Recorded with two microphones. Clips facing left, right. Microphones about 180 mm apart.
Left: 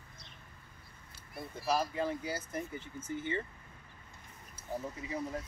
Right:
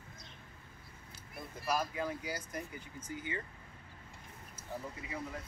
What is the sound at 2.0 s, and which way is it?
Speech, 25° left (ahead or behind).